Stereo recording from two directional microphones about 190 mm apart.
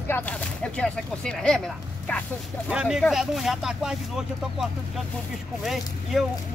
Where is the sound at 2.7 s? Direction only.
5° right (ahead or behind).